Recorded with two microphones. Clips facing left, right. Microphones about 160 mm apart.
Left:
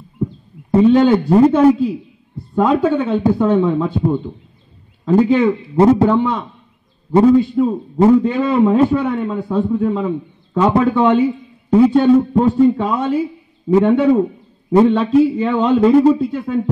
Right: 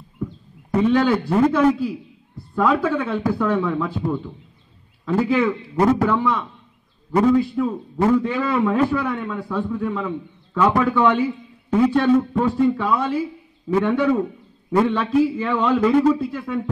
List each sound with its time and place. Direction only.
0.2 s heart sounds: 30° left (ahead or behind)
1.3 s a man's voice: 30° left (ahead or behind)
7.6 s a man's voice: 30° left (ahead or behind)